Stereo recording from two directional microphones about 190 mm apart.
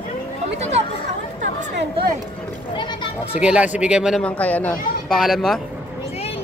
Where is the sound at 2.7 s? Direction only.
25° left (ahead or behind).